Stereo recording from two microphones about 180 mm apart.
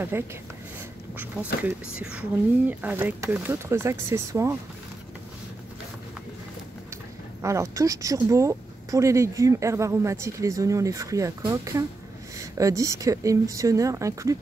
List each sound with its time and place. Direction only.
0.1 s speech: 10° right (ahead or behind)
1.6 s speech: 5° right (ahead or behind)
7.4 s speech: 15° right (ahead or behind)